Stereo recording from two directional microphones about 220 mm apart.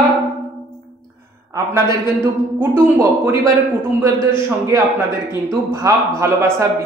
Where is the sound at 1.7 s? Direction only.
10° right (ahead or behind).